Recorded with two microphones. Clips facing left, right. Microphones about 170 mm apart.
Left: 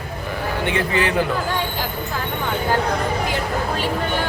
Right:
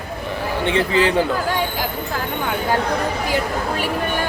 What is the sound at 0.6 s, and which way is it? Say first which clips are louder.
Speech: right 4 dB; 25° right (ahead or behind).